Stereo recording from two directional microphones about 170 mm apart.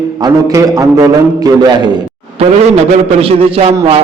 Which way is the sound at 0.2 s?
20° right (ahead or behind).